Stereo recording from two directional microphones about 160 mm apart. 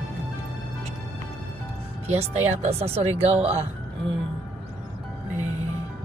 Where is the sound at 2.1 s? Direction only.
40° right (ahead or behind).